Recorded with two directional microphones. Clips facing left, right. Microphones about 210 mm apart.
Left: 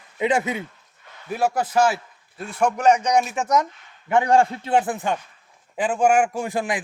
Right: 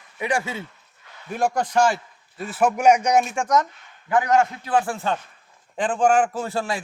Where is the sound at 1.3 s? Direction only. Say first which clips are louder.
Even; 5° left (ahead or behind).